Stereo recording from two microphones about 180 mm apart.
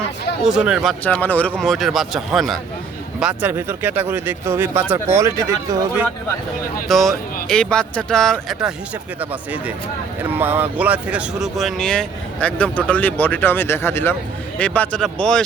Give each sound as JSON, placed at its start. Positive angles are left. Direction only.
{"t": 0.4, "sound": "a man's voice", "side_deg": -5}
{"t": 1.0, "sound": "a man's voice", "side_deg": 10}
{"t": 6.8, "sound": "a man's voice", "side_deg": 0}